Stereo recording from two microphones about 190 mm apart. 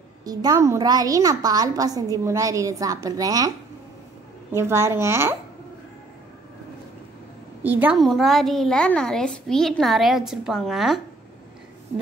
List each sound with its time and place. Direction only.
0.2 s a woman's voice: 20° right (ahead or behind)
7.6 s a woman's voice: 10° right (ahead or behind)